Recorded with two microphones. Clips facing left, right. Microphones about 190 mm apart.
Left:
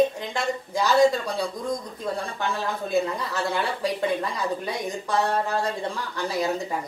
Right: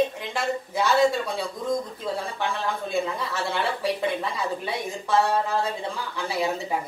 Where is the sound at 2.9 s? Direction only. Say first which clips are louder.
Left 5 dB; centre (ahead or behind).